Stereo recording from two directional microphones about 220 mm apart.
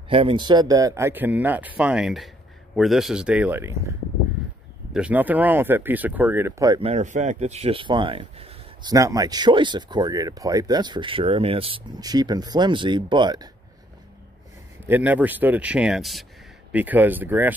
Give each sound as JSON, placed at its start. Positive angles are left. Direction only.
{"t": 0.1, "sound": "speech", "side_deg": -25}
{"t": 4.9, "sound": "speech", "side_deg": -5}
{"t": 6.9, "sound": "speech", "side_deg": -35}
{"t": 14.9, "sound": "speech", "side_deg": -5}